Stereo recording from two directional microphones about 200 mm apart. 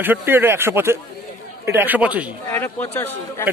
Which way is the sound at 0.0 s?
10° right (ahead or behind).